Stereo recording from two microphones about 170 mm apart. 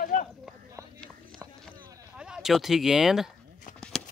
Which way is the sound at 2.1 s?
5° right (ahead or behind).